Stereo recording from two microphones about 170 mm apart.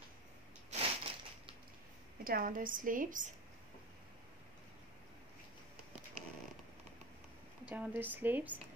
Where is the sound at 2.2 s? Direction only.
55° right (ahead or behind).